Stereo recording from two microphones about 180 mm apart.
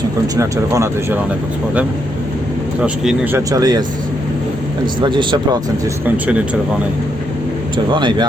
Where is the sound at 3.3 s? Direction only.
20° right (ahead or behind).